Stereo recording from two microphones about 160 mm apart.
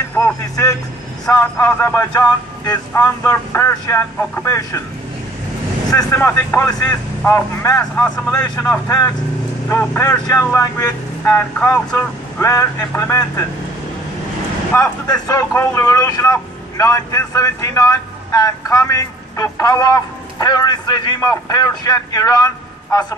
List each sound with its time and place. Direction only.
0.1 s speech: 15° left (ahead or behind)
5.9 s speech: 20° left (ahead or behind)
14.7 s speech: 20° left (ahead or behind)